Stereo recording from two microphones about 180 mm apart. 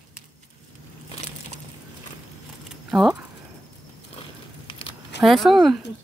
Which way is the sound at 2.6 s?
Centre (ahead or behind).